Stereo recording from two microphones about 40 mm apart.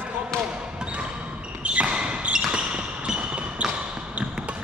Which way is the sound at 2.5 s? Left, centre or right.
Right.